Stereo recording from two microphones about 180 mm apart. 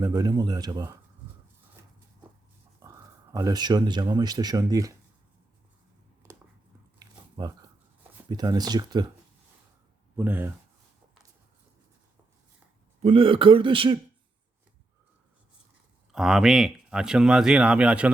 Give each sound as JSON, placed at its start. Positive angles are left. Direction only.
{"t": 0.0, "sound": "speech", "side_deg": -20}
{"t": 2.8, "sound": "speech", "side_deg": -20}
{"t": 7.0, "sound": "dog", "side_deg": -20}
{"t": 8.3, "sound": "speech", "side_deg": -20}
{"t": 10.2, "sound": "speech", "side_deg": -10}
{"t": 13.0, "sound": "speech", "side_deg": -30}
{"t": 16.1, "sound": "speech", "side_deg": 0}